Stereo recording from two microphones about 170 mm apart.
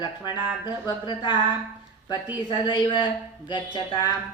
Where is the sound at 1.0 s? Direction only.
25° left (ahead or behind).